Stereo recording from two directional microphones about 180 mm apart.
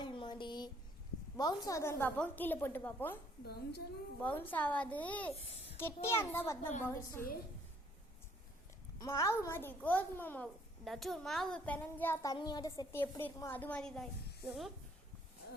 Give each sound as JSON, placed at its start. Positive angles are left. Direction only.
{"t": 0.0, "sound": "a sound", "side_deg": 25}
{"t": 1.4, "sound": "a woman's voice", "side_deg": 20}
{"t": 3.4, "sound": "speech", "side_deg": 60}
{"t": 4.2, "sound": "a woman's voice", "side_deg": 10}
{"t": 9.0, "sound": "a woman's voice", "side_deg": 15}